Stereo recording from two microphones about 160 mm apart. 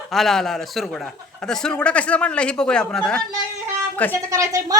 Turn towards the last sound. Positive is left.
turn(degrees=-20)  # may be behind; listen again after turning